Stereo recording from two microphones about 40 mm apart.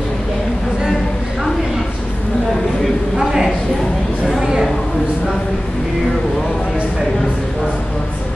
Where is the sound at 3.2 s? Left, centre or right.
Centre.